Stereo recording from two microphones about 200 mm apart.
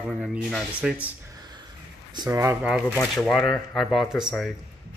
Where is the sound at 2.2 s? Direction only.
15° right (ahead or behind).